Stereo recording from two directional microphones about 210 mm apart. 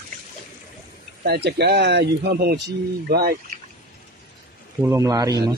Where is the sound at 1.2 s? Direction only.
50° right (ahead or behind).